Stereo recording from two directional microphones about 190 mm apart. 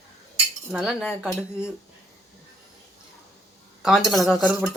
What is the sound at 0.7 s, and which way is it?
Speech, 5° right (ahead or behind).